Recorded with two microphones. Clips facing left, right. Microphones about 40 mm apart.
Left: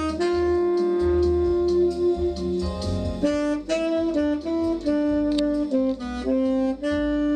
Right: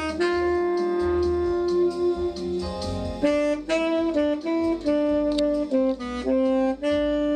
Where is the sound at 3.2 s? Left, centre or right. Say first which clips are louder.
Right 2 dB; centre.